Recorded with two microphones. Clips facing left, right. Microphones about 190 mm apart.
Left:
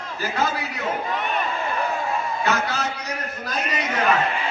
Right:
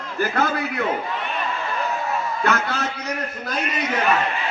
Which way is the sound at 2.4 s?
55° right (ahead or behind).